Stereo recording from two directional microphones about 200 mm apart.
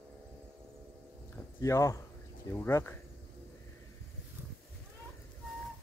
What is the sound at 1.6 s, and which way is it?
Speech, 15° left (ahead or behind).